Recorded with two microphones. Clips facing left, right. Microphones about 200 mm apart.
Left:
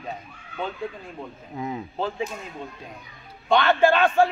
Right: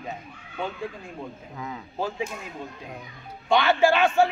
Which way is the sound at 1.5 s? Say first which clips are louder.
Left 8 dB; 25° left (ahead or behind).